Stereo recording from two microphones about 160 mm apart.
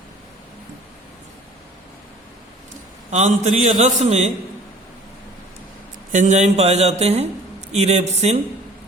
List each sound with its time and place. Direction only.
3.1 s a man's voice: 45° right (ahead or behind)
6.1 s a man's voice: 50° right (ahead or behind)